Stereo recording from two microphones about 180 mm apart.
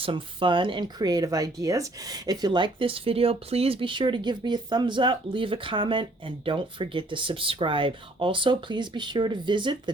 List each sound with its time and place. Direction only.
0.0 s speech: 30° right (ahead or behind)